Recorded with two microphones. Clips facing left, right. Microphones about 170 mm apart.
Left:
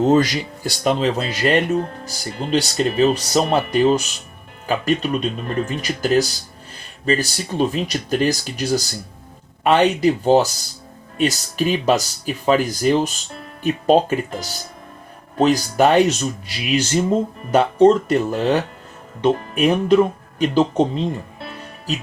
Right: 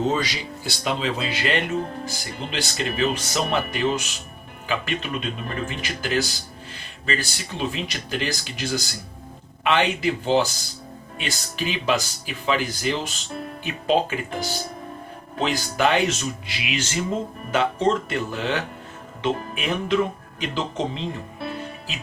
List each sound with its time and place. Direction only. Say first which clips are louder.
0.1 s speech: left 9 dB; 45° left (ahead or behind)